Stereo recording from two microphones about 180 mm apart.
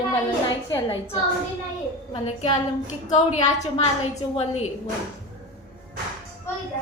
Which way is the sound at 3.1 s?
40° left (ahead or behind).